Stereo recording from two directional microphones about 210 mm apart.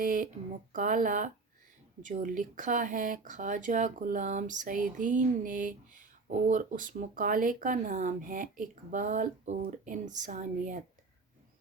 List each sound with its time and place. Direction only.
0.0 s speech: 40° right (ahead or behind)